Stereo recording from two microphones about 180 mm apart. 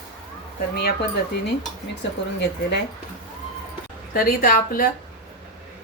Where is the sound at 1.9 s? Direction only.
75° left (ahead or behind).